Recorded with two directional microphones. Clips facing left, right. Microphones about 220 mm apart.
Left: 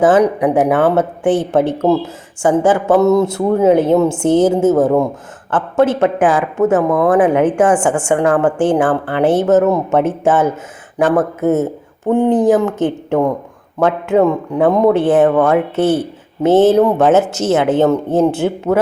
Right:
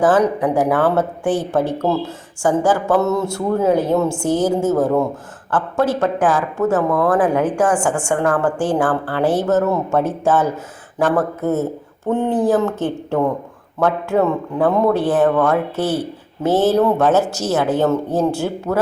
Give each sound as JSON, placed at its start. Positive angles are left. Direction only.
{"t": 0.0, "sound": "speech", "side_deg": 20}